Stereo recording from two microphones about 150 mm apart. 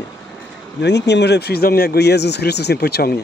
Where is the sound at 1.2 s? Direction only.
90° left.